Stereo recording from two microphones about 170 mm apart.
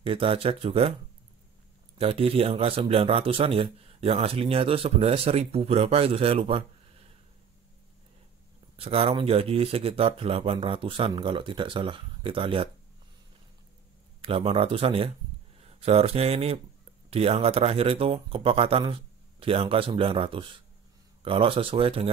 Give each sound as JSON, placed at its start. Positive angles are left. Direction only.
{"t": 0.0, "sound": "a man's voice", "side_deg": -35}
{"t": 2.0, "sound": "a man's voice", "side_deg": -35}
{"t": 8.7, "sound": "a man's voice", "side_deg": -35}
{"t": 14.2, "sound": "a man's voice", "side_deg": -35}